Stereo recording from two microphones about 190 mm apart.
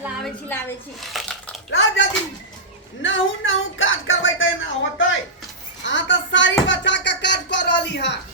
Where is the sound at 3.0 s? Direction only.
85° left.